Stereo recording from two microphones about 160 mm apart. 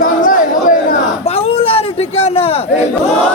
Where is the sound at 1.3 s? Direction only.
40° left (ahead or behind).